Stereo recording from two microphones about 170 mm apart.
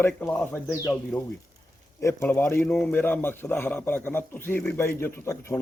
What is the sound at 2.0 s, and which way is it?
A man's voice, 15° left (ahead or behind).